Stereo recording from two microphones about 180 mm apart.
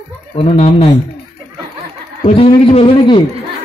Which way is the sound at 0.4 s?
30° left (ahead or behind).